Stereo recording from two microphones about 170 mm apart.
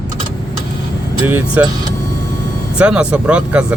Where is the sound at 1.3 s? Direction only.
10° right (ahead or behind).